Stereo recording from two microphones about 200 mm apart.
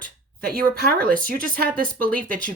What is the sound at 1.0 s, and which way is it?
Speech, 45° right (ahead or behind).